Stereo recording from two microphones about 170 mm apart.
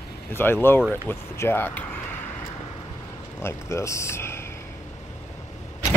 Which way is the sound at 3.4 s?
15° left (ahead or behind).